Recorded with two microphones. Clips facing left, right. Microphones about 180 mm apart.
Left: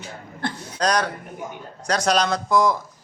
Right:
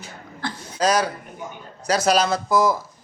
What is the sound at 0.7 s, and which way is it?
Speech, 5° right (ahead or behind).